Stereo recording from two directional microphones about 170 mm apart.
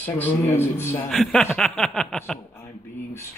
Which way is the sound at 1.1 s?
Centre (ahead or behind).